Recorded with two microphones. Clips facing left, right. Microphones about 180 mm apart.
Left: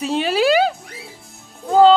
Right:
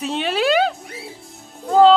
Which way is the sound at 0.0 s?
Centre (ahead or behind).